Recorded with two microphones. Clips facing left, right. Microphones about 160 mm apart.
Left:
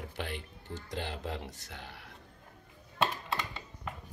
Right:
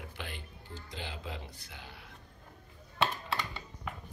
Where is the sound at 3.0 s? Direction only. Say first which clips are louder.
Even; 5° right (ahead or behind).